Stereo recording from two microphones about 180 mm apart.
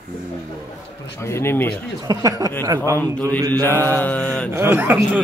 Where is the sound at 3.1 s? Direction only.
10° left (ahead or behind).